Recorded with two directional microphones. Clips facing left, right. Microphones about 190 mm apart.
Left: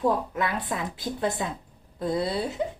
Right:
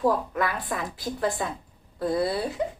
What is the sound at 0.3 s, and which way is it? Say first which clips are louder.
A woman's voice: even; 20° left (ahead or behind).